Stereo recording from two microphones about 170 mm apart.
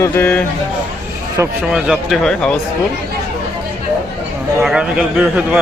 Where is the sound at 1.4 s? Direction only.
15° right (ahead or behind).